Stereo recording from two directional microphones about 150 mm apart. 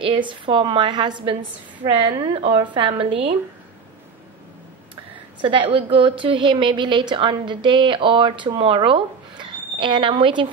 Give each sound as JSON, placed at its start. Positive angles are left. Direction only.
{"t": 0.0, "sound": "a woman's voice", "side_deg": -35}
{"t": 5.7, "sound": "a woman's voice", "side_deg": -35}